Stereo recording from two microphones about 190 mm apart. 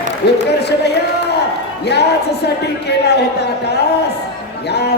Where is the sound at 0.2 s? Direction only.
60° left (ahead or behind).